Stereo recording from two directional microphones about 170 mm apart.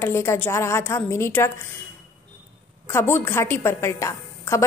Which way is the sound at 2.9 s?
15° left (ahead or behind).